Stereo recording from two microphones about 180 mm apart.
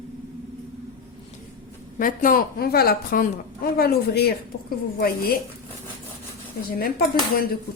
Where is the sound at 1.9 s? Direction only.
50° left (ahead or behind).